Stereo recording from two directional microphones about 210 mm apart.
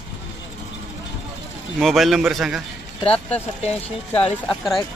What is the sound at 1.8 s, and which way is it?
Speech, centre (ahead or behind).